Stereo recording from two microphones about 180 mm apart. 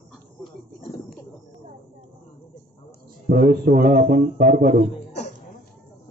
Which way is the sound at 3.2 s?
55° right (ahead or behind).